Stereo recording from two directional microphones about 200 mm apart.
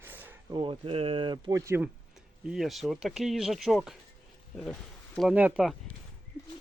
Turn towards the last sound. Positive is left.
turn(degrees=-5)  # may be behind; listen again after turning